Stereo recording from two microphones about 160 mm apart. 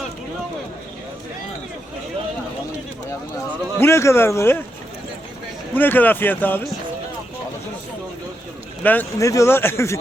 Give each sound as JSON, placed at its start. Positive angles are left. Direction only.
{"t": 3.8, "sound": "speech", "side_deg": 15}
{"t": 5.7, "sound": "speech", "side_deg": 10}
{"t": 8.8, "sound": "speech", "side_deg": 10}